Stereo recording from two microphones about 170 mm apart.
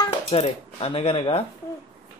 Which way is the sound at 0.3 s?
35° left (ahead or behind).